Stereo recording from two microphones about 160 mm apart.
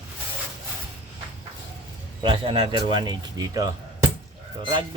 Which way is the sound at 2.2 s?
35° right (ahead or behind).